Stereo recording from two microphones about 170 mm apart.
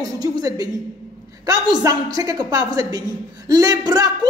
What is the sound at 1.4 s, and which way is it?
A woman's voice, 25° right (ahead or behind).